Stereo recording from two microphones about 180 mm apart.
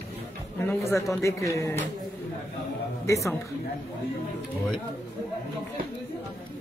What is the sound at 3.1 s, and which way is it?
Speech, 15° left (ahead or behind).